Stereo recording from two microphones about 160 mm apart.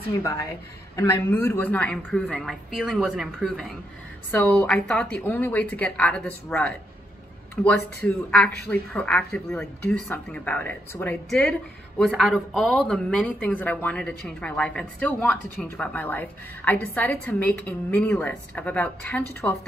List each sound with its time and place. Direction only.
0.2 s a woman's voice: 20° left (ahead or behind); by 3.6 s centre (ahead or behind)
4.6 s speech: 5° left (ahead or behind)
12.1 s speech: centre (ahead or behind)